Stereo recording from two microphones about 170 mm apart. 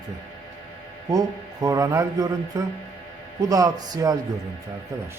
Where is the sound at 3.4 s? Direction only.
20° right (ahead or behind).